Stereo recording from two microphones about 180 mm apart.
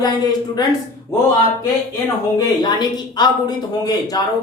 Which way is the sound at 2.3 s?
25° left (ahead or behind).